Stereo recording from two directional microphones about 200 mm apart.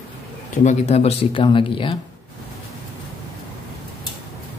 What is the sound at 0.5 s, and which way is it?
Speech, 35° left (ahead or behind).